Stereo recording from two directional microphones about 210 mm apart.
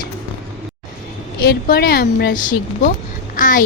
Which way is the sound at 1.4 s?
50° left (ahead or behind).